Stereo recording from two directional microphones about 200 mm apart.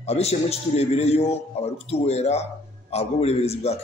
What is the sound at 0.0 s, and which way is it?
A man's voice, 30° left (ahead or behind).